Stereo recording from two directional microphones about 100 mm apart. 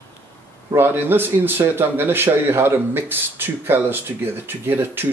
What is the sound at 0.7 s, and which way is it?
Speech, 20° right (ahead or behind).